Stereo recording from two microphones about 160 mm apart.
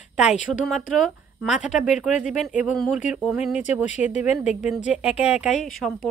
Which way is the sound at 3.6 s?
45° left (ahead or behind).